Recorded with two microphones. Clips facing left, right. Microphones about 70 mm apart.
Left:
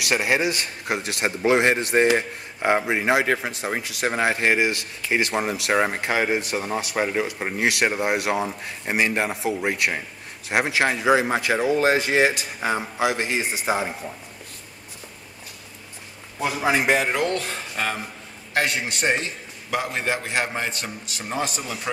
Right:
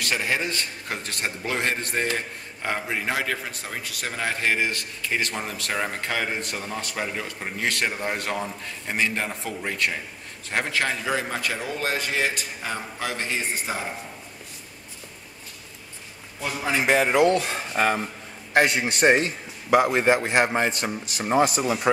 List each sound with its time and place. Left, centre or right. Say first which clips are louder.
0.0 s a man's voice: left 4 dB; centre
16.3 s a man's voice: left 4 dB; centre; by 21.5 s right